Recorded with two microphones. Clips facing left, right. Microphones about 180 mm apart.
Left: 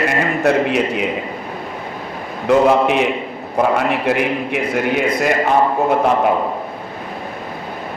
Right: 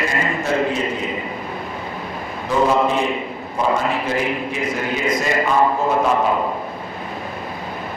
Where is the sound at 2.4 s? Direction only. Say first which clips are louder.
Left 5 dB; 75° left (ahead or behind).